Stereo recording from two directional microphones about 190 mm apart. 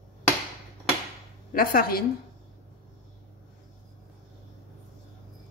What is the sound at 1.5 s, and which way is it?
Speech, 50° left (ahead or behind).